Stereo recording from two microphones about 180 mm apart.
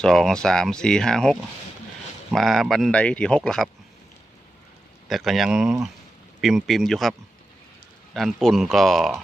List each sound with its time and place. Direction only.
0.0 s speech: 5° left (ahead or behind)
5.0 s speech: centre (ahead or behind)